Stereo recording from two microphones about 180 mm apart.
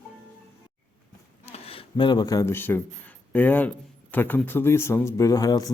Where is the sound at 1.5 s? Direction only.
35° left (ahead or behind).